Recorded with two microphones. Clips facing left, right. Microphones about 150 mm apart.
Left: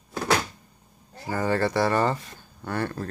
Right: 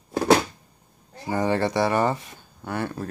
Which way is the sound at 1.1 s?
20° right (ahead or behind).